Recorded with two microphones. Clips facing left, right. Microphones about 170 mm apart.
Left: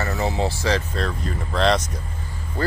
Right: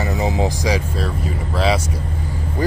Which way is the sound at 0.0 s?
15° right (ahead or behind).